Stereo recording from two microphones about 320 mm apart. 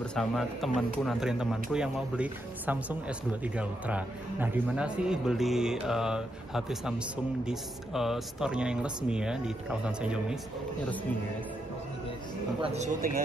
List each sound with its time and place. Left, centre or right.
0.0 s speech: centre
12.6 s speech: right